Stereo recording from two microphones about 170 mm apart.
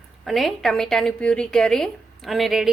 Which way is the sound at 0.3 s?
Centre (ahead or behind).